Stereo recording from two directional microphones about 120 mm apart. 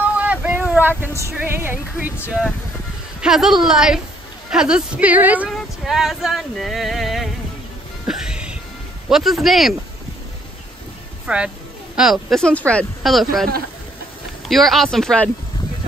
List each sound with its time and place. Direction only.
0.2 s a sound: 15° right (ahead or behind)
1.3 s a woman's voice: 15° right (ahead or behind)
3.2 s a woman's voice: 5° right (ahead or behind)
5.5 s a sound: centre (ahead or behind)
8.1 s music: 5° right (ahead or behind)
9.1 s speech: centre (ahead or behind)
11.2 s speech: 10° right (ahead or behind)
14.5 s speech: centre (ahead or behind)